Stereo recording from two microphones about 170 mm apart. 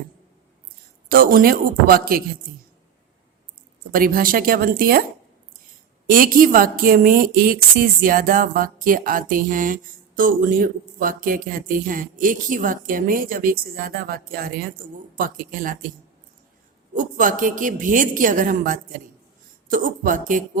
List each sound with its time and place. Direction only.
1.0 s a woman's voice: 60° right (ahead or behind)
3.9 s a woman's voice: 55° right (ahead or behind)
6.1 s a woman's voice: 55° right (ahead or behind)
16.9 s a woman's voice: 50° right (ahead or behind)